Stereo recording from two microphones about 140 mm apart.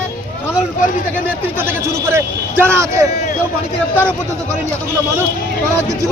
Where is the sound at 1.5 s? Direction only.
20° right (ahead or behind).